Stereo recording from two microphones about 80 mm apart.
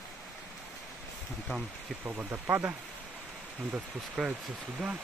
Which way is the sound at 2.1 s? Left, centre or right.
Right.